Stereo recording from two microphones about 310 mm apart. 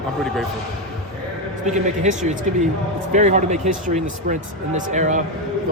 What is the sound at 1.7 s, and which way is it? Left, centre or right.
Speech, right.